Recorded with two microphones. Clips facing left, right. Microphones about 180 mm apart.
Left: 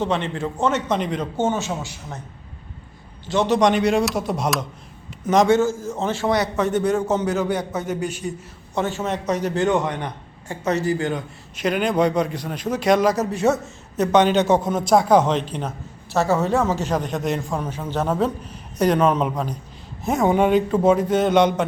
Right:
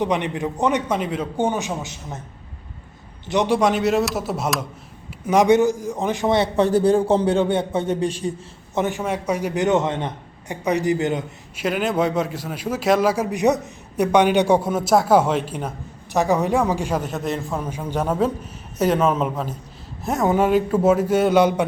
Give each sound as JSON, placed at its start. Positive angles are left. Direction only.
{"t": 0.0, "sound": "a man's voice", "side_deg": -15}
{"t": 3.2, "sound": "a man's voice", "side_deg": -15}
{"t": 8.7, "sound": "a man's voice", "side_deg": -15}
{"t": 11.5, "sound": "a man's voice", "side_deg": -5}